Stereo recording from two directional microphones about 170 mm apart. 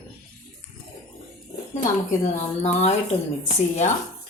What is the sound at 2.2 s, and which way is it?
Speech, 40° left (ahead or behind).